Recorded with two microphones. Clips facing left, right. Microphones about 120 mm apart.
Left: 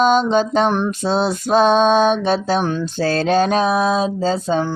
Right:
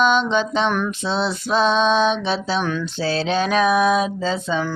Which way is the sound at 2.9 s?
45° left (ahead or behind).